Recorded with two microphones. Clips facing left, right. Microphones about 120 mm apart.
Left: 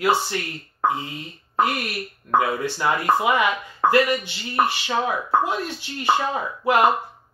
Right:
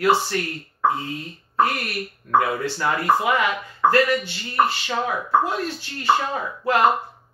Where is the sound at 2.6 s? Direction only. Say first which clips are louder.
Left 1 dB; 15° left (ahead or behind).